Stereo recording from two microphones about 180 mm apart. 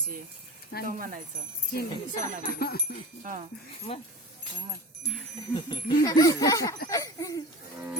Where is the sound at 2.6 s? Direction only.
60° left (ahead or behind).